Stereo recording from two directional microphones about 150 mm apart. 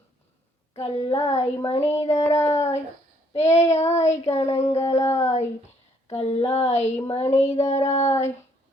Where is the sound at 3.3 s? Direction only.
50° left (ahead or behind).